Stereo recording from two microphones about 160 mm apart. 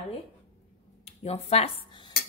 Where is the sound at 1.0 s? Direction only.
40° left (ahead or behind).